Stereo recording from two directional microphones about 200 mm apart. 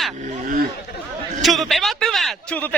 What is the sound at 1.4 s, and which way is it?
A man's voice, centre (ahead or behind).